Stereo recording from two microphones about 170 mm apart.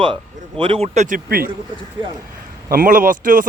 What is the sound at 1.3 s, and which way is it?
Speech, 60° right (ahead or behind).